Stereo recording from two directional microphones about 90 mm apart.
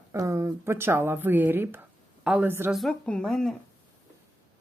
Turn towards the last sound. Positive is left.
turn(degrees=5)  # may be behind; listen again after turning